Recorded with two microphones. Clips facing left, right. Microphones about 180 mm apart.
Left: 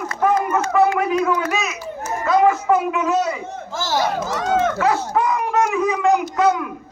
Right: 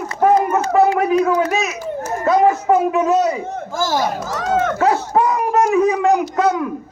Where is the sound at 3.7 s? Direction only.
50° right (ahead or behind).